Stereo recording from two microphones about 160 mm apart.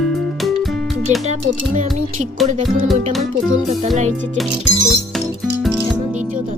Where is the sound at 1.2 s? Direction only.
45° right (ahead or behind).